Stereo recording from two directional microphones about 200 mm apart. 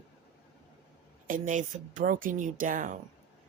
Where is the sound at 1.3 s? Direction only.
40° right (ahead or behind).